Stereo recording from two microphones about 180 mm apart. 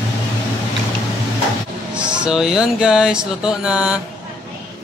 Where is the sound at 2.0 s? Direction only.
5° right (ahead or behind).